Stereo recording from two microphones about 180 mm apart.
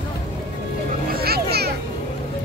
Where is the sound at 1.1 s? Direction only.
60° right (ahead or behind).